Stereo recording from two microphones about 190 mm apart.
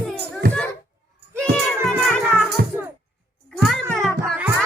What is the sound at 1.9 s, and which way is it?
Music, centre (ahead or behind).